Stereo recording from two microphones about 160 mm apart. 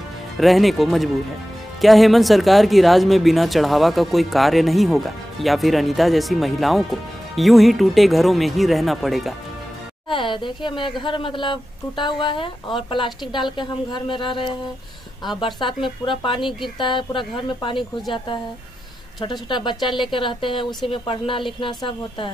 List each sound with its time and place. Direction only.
0.4 s speech: centre (ahead or behind)
10.0 s speech: 30° left (ahead or behind)
19.5 s speech: 30° left (ahead or behind)